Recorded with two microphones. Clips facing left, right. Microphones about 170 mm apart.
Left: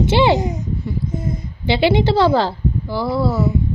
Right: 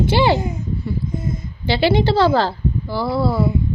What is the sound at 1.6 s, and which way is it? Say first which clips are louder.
A woman's voice: left 1 dB; 20° left (ahead or behind).